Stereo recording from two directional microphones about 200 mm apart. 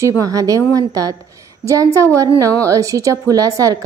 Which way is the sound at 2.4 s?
15° right (ahead or behind).